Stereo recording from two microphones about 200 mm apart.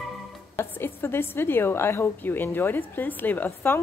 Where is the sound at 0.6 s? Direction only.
10° left (ahead or behind).